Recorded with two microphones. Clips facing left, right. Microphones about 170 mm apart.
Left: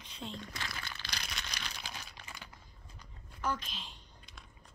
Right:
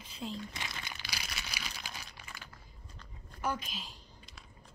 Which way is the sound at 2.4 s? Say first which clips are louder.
Even; 15° left (ahead or behind).